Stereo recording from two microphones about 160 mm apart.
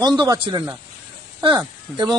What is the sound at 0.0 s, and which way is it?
Speech, 25° right (ahead or behind).